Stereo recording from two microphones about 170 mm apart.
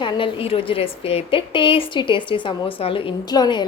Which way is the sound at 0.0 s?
30° left (ahead or behind).